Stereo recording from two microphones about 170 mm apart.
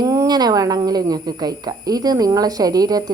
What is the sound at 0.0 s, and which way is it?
A woman's voice, 20° right (ahead or behind).